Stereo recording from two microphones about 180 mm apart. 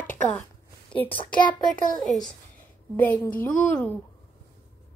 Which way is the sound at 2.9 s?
10° left (ahead or behind).